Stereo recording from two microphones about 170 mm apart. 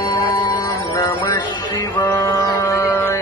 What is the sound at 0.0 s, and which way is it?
Music, 20° left (ahead or behind).